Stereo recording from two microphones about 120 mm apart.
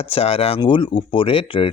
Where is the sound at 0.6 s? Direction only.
40° left (ahead or behind).